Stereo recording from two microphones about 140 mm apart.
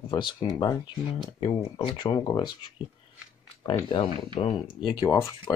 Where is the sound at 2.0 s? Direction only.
30° left (ahead or behind).